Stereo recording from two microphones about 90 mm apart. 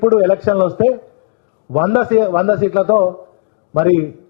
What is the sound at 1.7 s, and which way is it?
A man's voice, centre (ahead or behind).